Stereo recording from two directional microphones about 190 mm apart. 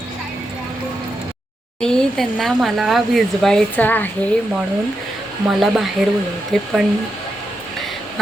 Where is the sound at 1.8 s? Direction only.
5° left (ahead or behind).